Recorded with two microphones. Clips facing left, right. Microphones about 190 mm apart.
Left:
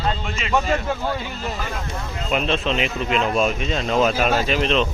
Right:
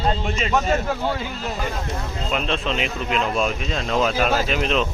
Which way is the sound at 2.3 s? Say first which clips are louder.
Left 3 dB; 5° left (ahead or behind).